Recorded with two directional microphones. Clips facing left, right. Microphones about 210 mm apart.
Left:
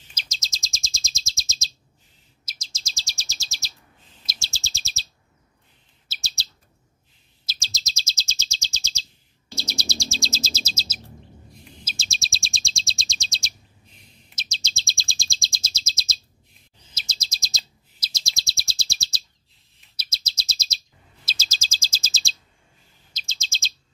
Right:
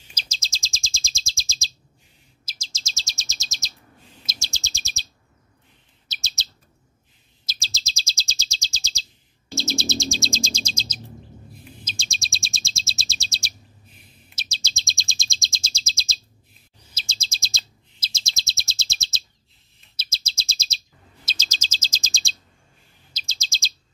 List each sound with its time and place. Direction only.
0.1 s bird vocalization: 30° right (ahead or behind)
2.4 s chirp: 30° right (ahead or behind)
6.0 s chirp: 20° right (ahead or behind)
7.6 s chirp: 30° right (ahead or behind)
10.2 s chirp: 5° left (ahead or behind); by 20.7 s 25° right (ahead or behind)
21.3 s chirp: 10° left (ahead or behind)
23.2 s chirp: 35° right (ahead or behind)